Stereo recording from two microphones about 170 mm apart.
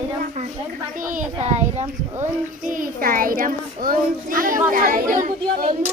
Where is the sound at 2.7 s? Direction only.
55° right (ahead or behind).